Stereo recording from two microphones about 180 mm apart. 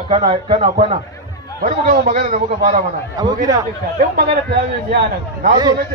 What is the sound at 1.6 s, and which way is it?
A man's voice, 45° right (ahead or behind).